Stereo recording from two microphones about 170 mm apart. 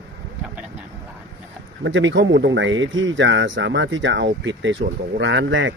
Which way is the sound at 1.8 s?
90° right.